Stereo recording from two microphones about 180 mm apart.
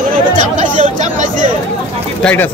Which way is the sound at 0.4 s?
45° right (ahead or behind).